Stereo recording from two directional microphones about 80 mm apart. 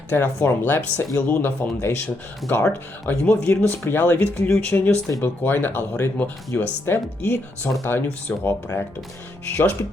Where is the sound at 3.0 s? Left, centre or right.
Left.